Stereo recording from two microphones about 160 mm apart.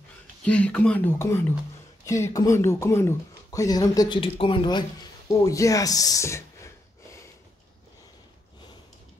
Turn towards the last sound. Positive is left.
turn(degrees=20)  # may be behind; listen again after turning